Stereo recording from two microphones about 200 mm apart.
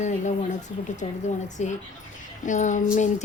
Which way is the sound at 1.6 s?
35° left (ahead or behind).